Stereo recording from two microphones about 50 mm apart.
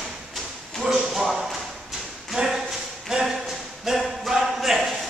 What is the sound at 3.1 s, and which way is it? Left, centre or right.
Speech, centre.